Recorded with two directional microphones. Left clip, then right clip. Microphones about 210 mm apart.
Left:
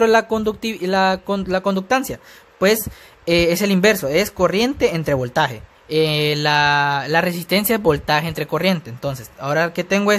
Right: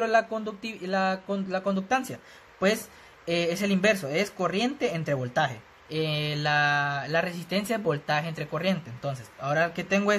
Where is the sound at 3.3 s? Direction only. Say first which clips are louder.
Left 10 dB; 50° left (ahead or behind).